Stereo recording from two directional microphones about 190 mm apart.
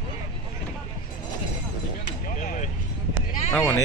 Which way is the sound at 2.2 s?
45° left (ahead or behind).